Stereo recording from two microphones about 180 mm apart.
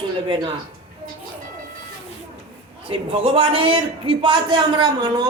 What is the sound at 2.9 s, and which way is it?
A man's voice, 30° right (ahead or behind).